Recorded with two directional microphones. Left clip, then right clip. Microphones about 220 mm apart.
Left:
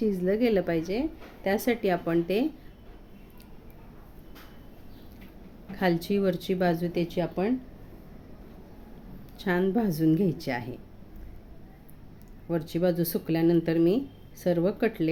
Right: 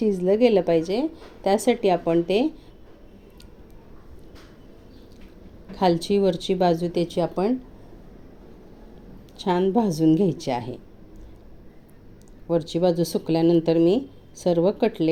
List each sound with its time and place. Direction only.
0.0 s speech: 10° right (ahead or behind)
5.7 s speech: 5° right (ahead or behind)
9.4 s speech: 5° right (ahead or behind)
12.5 s speech: 5° right (ahead or behind)